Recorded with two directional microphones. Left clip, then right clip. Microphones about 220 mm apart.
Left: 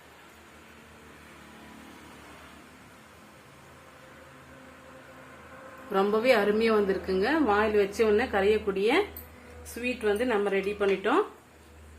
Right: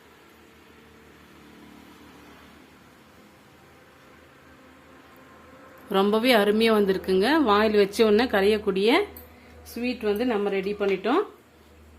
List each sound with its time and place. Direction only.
6.2 s speech: 75° right (ahead or behind); by 9.0 s 60° right (ahead or behind)
9.7 s a woman's voice: 40° right (ahead or behind)